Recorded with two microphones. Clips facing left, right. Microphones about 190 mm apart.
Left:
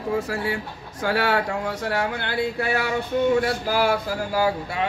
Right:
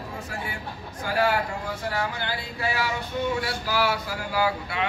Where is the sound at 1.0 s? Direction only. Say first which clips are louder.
Left 2 dB; 75° left (ahead or behind).